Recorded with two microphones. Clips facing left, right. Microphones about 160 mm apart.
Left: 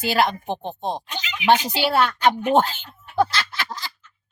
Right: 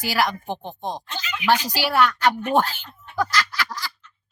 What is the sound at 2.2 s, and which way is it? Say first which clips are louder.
Speech: left 2 dB; 15° left (ahead or behind).